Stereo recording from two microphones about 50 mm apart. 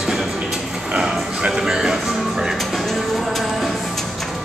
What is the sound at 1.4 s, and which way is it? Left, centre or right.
Music, centre.